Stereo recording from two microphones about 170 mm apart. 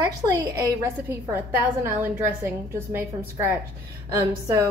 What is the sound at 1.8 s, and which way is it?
A woman's voice, 10° right (ahead or behind).